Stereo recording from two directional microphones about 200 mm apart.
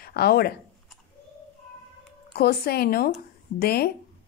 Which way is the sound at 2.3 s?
50° left (ahead or behind).